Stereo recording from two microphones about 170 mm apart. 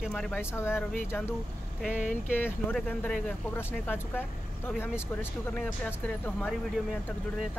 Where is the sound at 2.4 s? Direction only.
10° left (ahead or behind).